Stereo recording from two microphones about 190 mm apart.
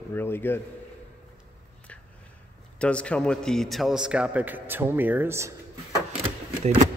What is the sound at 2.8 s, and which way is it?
A man's voice, 5° left (ahead or behind).